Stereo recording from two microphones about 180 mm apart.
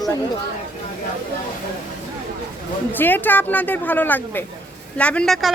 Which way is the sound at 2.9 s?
10° left (ahead or behind).